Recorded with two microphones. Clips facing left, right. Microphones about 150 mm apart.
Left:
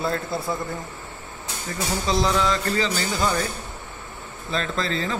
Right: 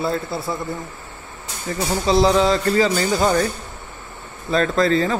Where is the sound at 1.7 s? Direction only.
30° right (ahead or behind).